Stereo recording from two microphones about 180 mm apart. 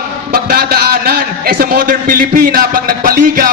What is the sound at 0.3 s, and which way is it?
A man's voice, 55° right (ahead or behind).